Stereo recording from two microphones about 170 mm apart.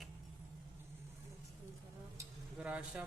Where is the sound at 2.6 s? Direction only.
5° right (ahead or behind).